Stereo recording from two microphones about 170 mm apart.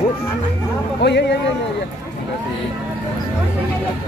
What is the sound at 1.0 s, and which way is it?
Speech, 90° left.